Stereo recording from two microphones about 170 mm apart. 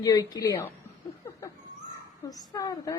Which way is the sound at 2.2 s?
20° left (ahead or behind).